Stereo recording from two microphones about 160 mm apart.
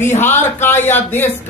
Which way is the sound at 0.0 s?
15° left (ahead or behind).